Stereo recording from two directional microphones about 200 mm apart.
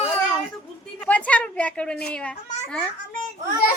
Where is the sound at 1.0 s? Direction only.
5° left (ahead or behind).